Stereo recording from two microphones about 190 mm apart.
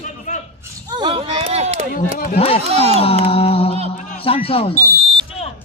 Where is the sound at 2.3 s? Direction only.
30° left (ahead or behind).